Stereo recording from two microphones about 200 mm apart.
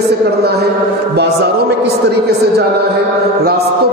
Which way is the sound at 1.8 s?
55° right (ahead or behind).